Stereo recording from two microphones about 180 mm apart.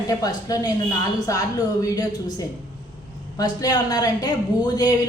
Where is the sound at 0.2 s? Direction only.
20° left (ahead or behind).